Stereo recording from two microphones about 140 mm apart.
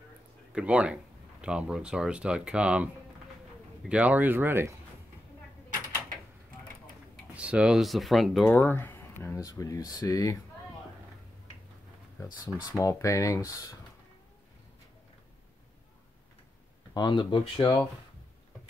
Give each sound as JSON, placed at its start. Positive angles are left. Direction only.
{"t": 0.5, "sound": "speech", "side_deg": -10}
{"t": 7.3, "sound": "speech", "side_deg": -10}
{"t": 8.5, "sound": "speech", "side_deg": 15}
{"t": 12.7, "sound": "speech", "side_deg": 20}
{"t": 16.9, "sound": "speech", "side_deg": 30}